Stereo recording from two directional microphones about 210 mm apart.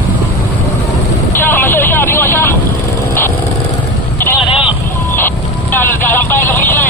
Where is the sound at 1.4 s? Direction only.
10° left (ahead or behind).